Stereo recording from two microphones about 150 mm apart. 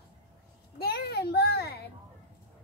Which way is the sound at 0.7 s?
90° left.